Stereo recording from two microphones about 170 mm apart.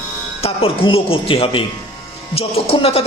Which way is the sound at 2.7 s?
35° left (ahead or behind).